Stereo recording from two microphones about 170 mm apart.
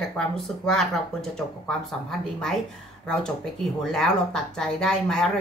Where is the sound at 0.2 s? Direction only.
5° left (ahead or behind).